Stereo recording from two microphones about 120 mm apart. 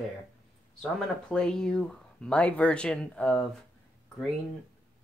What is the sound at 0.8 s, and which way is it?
Speech, 5° left (ahead or behind).